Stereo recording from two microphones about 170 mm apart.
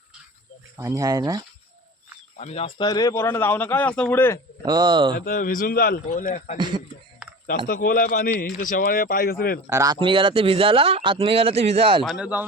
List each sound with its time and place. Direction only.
0.8 s speech: 20° right (ahead or behind)
2.4 s speech: 40° left (ahead or behind); by 4.4 s 10° left (ahead or behind)
4.6 s speech: 25° right (ahead or behind)
5.1 s a man's voice: 55° left (ahead or behind)
7.2 s a sound: 5° right (ahead or behind)
7.7 s speech: 55° left (ahead or behind)
9.6 s speech: 20° right (ahead or behind)
10.0 s speech: 30° right (ahead or behind)
12.0 s speech: 5° right (ahead or behind)